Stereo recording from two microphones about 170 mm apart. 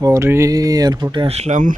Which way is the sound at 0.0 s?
15° right (ahead or behind).